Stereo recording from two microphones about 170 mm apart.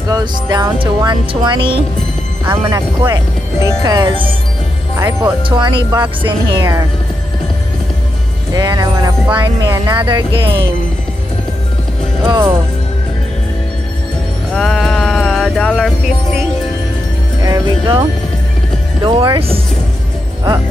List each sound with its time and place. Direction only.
0.1 s speech: 25° right (ahead or behind)
2.4 s speech: 15° right (ahead or behind)
3.8 s speech: 25° right (ahead or behind)
4.9 s speech: 15° right (ahead or behind)
5.5 s speech: 30° right (ahead or behind)
8.5 s speech: 20° right (ahead or behind)
12.3 s speech: 15° right (ahead or behind)
14.5 s music: 5° left (ahead or behind)
17.4 s speech: 25° right (ahead or behind)
19.0 s speech: 30° right (ahead or behind)